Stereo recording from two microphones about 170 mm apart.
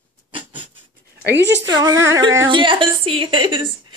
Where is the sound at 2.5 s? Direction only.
30° right (ahead or behind).